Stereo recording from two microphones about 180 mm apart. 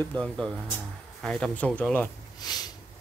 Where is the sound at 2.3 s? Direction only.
20° left (ahead or behind).